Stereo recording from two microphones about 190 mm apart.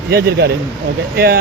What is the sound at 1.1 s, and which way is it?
Speech, 55° right (ahead or behind).